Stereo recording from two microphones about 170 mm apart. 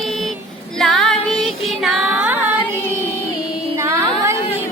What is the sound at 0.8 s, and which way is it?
Music, centre (ahead or behind).